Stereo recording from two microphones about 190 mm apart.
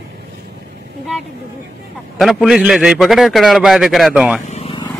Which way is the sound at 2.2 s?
Centre (ahead or behind).